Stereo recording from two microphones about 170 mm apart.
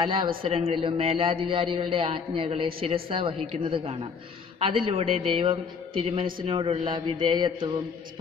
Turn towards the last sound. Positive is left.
turn(degrees=-30)  # may be behind; listen again after turning